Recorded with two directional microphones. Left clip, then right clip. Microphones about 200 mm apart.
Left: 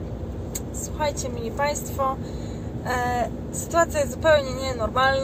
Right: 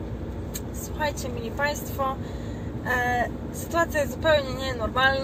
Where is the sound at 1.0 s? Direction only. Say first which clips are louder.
Left 2 dB; 5° left (ahead or behind).